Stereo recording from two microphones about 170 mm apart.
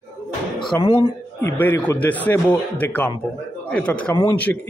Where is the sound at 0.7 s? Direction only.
10° left (ahead or behind).